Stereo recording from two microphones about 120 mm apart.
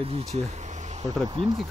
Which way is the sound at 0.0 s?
60° right (ahead or behind).